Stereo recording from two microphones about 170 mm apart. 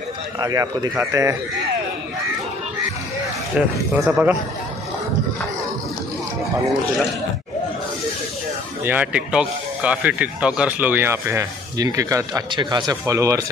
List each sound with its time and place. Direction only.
0.4 s speech: 20° right (ahead or behind)
3.5 s speech: 10° right (ahead or behind)
8.8 s speech: 10° right (ahead or behind)